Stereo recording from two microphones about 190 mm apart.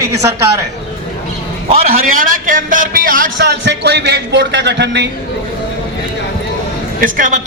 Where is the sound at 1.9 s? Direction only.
50° right (ahead or behind).